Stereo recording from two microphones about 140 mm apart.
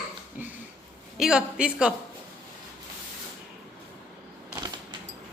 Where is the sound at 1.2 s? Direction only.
5° right (ahead or behind).